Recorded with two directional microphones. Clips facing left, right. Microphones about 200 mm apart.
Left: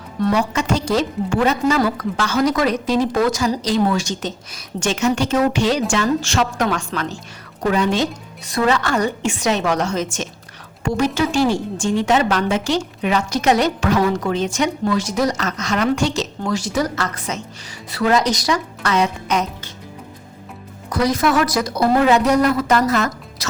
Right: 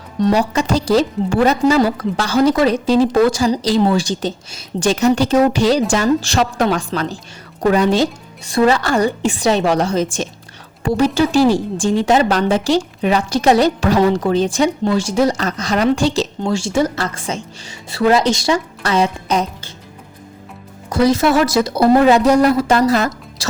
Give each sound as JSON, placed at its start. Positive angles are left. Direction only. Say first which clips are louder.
{"t": 0.2, "sound": "a woman's voice", "louder": "right 3 dB", "side_deg": -30}
{"t": 20.9, "sound": "a woman's voice", "louder": "right 4 dB", "side_deg": -25}